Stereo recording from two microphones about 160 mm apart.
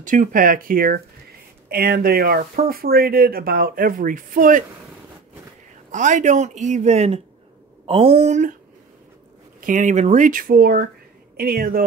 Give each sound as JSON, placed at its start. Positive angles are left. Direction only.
{"t": 0.0, "sound": "speech", "side_deg": -55}
{"t": 5.9, "sound": "speech", "side_deg": -50}
{"t": 9.6, "sound": "speech", "side_deg": -55}